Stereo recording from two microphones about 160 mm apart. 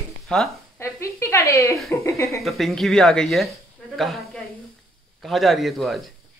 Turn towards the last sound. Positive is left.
turn(degrees=0)  # may be behind; listen again after turning